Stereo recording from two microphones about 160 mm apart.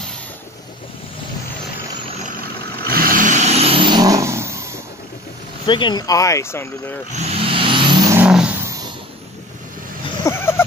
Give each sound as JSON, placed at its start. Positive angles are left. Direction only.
{"t": 2.9, "sound": "vehicle", "side_deg": -60}
{"t": 5.7, "sound": "speech", "side_deg": 30}
{"t": 7.1, "sound": "vehicle", "side_deg": -45}
{"t": 8.1, "sound": "vehicle", "side_deg": -5}
{"t": 10.3, "sound": "a sound", "side_deg": 20}